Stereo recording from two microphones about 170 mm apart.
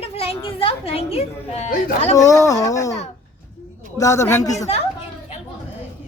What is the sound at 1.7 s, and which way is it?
Speech, 40° left (ahead or behind).